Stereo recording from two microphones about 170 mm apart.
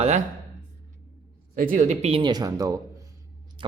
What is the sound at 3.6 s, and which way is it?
Hum, 30° right (ahead or behind).